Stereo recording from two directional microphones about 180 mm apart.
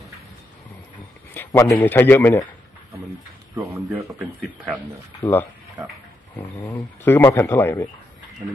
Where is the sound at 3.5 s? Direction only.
15° right (ahead or behind).